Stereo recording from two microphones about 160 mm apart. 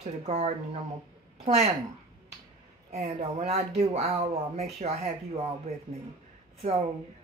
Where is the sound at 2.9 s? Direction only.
40° right (ahead or behind).